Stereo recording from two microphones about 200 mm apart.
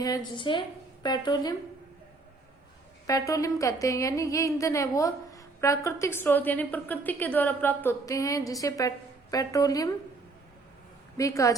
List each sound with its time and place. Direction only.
0.0 s a woman's voice: 20° left (ahead or behind)
3.1 s a woman's voice: 15° left (ahead or behind)
11.2 s a woman's voice: 15° left (ahead or behind)